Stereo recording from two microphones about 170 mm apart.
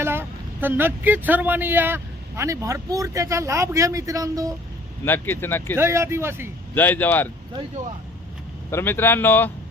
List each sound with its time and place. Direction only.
0.0 s speech: 15° right (ahead or behind)
5.0 s speech: 10° left (ahead or behind)
5.7 s speech: 15° right (ahead or behind)
6.7 s speech: 10° left (ahead or behind)
8.7 s speech: 15° left (ahead or behind)